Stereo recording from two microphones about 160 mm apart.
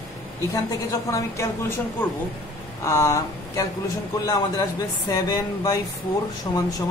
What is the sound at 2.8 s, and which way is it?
Speech, 20° left (ahead or behind).